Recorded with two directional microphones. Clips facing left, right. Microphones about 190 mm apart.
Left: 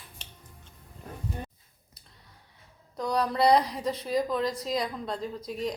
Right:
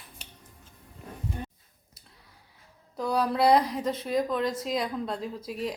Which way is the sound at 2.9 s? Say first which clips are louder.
Right 1 dB; 5° right (ahead or behind).